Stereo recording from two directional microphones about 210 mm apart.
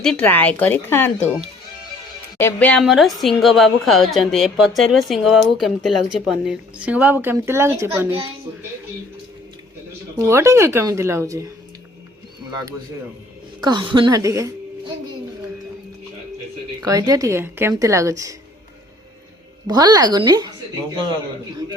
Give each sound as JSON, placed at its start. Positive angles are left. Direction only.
{"t": 0.0, "sound": "a woman's voice", "side_deg": 5}
{"t": 2.4, "sound": "a woman's voice", "side_deg": 5}
{"t": 10.2, "sound": "a woman's voice", "side_deg": -15}
{"t": 13.6, "sound": "a woman's voice", "side_deg": -20}
{"t": 16.8, "sound": "a woman's voice", "side_deg": -15}
{"t": 19.6, "sound": "a woman's voice", "side_deg": -20}